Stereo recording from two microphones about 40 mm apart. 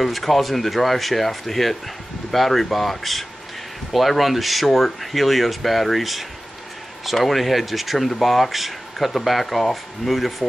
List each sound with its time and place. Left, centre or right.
0.0 s speech: centre